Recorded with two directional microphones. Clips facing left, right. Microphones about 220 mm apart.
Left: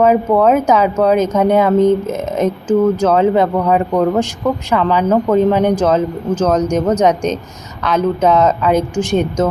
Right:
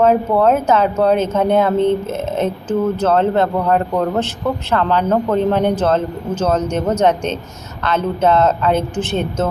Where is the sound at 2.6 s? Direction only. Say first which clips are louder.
Left 5 dB; 5° right (ahead or behind).